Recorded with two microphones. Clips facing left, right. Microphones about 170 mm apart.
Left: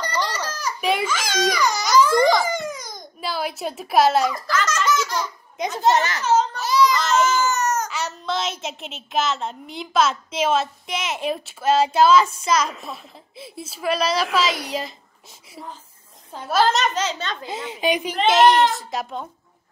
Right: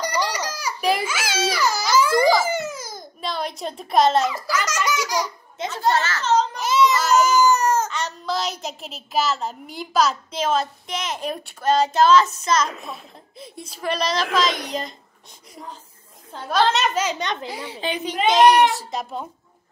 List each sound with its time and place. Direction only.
0.0 s a sound: 10° right (ahead or behind)
0.7 s a child's voice: centre (ahead or behind)
4.3 s speech: 10° right (ahead or behind)
5.6 s a child's voice: 20° left (ahead or behind)
6.5 s a sound: 20° right (ahead or behind)
7.5 s baby cry: 30° right (ahead or behind)
7.9 s a woman's voice: 5° left (ahead or behind)
16.3 s a child's voice: 5° left (ahead or behind); by 17.5 s 20° right (ahead or behind)
17.5 s a child's voice: 20° left (ahead or behind)
18.3 s a woman's voice: 5° left (ahead or behind)